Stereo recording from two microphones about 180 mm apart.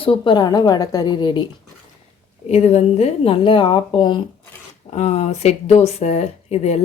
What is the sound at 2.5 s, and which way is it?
Speech, 35° left (ahead or behind).